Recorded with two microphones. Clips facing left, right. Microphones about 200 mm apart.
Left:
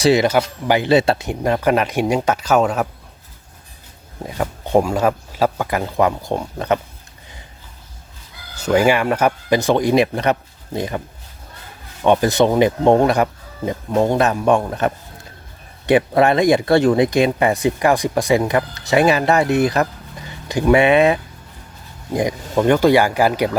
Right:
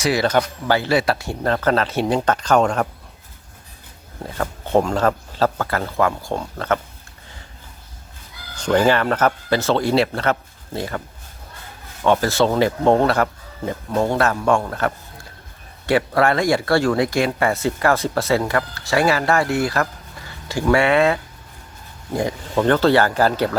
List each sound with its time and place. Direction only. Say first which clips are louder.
0.0 s speech: left 4 dB; 25° left (ahead or behind); by 2.8 s 5° left (ahead or behind)
4.2 s speech: left 2 dB; 15° left (ahead or behind)
8.5 s speech: left 1 dB; 10° left (ahead or behind)
12.0 s speech: left 3 dB; 20° left (ahead or behind)